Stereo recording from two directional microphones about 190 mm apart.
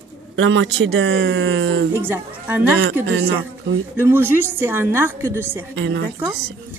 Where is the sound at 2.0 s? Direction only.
10° right (ahead or behind).